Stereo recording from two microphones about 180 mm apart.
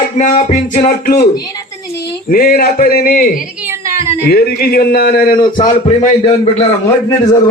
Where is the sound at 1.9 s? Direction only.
60° left (ahead or behind).